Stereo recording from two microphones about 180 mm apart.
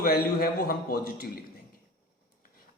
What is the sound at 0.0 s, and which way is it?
A man's voice, 55° left (ahead or behind).